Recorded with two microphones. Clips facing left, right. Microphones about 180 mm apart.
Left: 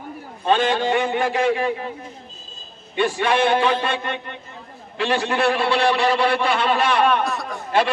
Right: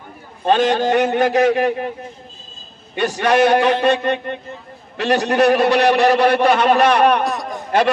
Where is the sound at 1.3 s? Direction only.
40° right (ahead or behind).